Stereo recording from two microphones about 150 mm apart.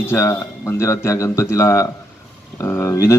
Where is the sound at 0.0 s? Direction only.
15° left (ahead or behind).